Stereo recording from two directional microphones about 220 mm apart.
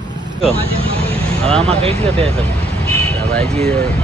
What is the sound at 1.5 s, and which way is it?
Speech, 25° right (ahead or behind).